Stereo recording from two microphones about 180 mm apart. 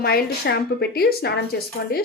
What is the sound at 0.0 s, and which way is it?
A woman's voice, 60° left (ahead or behind).